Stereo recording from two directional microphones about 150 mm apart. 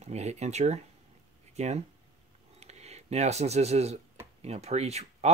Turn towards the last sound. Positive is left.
turn(degrees=-45)  # may be behind; listen again after turning